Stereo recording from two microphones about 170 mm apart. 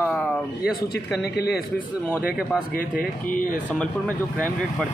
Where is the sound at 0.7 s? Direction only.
65° left (ahead or behind).